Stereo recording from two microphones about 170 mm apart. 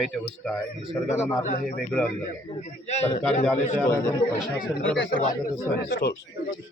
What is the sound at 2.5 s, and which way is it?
Speech, 40° left (ahead or behind).